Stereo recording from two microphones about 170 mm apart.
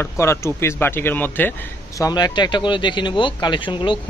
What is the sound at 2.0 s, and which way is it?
Speech, 20° left (ahead or behind).